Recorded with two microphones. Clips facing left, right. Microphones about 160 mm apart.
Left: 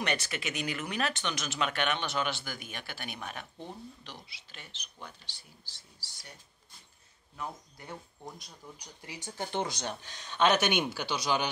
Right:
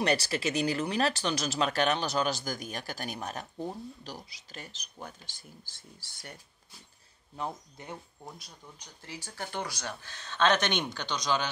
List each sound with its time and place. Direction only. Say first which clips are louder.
0.0 s speech: right 6 dB; 35° right (ahead or behind); by 6.3 s 55° right (ahead or behind)
7.3 s speech: right 4 dB; 25° right (ahead or behind)
8.7 s speech: right 5 dB; 15° left (ahead or behind)